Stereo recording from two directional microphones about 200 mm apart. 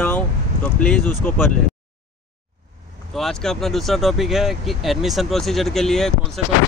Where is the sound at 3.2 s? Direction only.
Centre (ahead or behind).